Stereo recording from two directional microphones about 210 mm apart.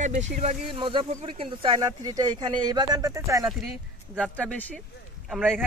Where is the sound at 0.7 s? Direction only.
25° right (ahead or behind).